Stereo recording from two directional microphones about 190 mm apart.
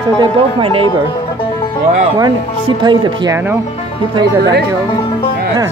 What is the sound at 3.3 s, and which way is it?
Speech, 10° right (ahead or behind).